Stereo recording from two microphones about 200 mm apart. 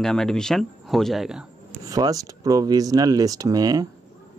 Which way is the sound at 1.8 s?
15° right (ahead or behind).